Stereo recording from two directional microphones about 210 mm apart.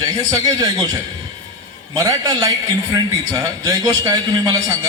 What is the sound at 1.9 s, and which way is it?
A man's voice, 20° right (ahead or behind).